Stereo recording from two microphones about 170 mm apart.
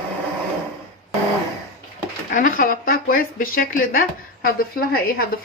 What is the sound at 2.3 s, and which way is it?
Speech, 55° left (ahead or behind).